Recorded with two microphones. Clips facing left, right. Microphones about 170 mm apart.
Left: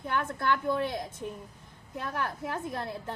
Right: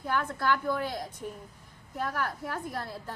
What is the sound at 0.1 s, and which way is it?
A woman's voice, 25° left (ahead or behind).